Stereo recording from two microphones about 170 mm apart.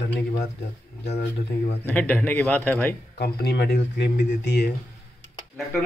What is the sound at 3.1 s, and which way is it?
Speech, 70° left (ahead or behind).